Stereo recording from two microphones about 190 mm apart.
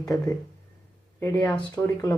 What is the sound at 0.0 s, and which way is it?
Speech, 15° left (ahead or behind).